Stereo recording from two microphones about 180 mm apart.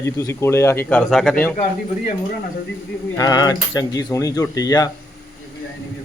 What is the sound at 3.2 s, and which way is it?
Speech, 20° left (ahead or behind).